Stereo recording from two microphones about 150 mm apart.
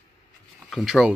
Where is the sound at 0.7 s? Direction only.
Centre (ahead or behind).